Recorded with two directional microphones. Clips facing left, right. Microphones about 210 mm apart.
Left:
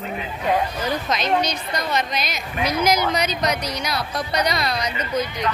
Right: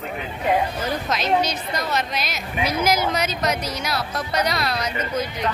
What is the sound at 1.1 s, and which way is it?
A woman's voice, 5° right (ahead or behind).